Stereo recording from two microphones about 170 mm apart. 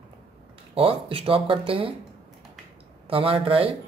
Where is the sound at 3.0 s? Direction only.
35° right (ahead or behind).